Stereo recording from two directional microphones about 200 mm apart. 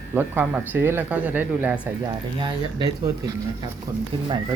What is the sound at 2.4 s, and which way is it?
Speech, 20° right (ahead or behind).